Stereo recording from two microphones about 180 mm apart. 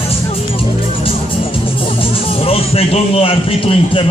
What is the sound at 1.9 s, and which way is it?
Speech, 30° left (ahead or behind).